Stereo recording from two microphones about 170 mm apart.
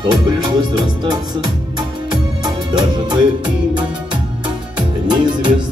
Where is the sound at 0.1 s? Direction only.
25° right (ahead or behind).